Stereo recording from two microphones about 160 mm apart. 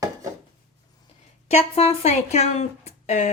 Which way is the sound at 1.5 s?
40° left (ahead or behind).